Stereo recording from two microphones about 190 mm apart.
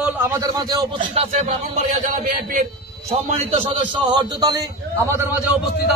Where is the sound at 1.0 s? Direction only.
35° right (ahead or behind).